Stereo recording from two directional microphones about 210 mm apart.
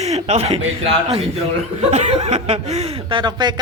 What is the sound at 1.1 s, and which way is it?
Speech, 30° right (ahead or behind).